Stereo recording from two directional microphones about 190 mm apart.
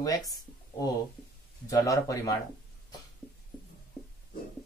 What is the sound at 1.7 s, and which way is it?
Speech, 15° left (ahead or behind).